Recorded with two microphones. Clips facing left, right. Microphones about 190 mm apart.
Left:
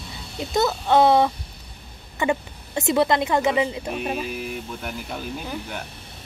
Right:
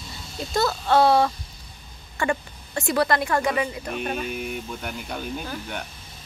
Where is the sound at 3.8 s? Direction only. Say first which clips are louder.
Left 1 dB; 5° left (ahead or behind).